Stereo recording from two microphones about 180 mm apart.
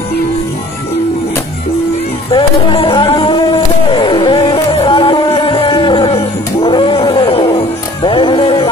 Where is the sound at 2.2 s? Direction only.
30° left (ahead or behind).